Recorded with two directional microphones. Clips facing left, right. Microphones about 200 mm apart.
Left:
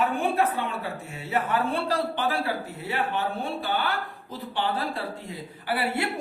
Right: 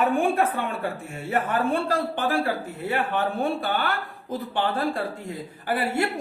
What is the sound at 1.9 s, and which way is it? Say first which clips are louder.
Speech: right 2 dB; 50° right (ahead or behind).